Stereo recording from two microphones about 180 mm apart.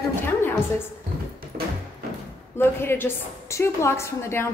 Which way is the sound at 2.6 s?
10° left (ahead or behind).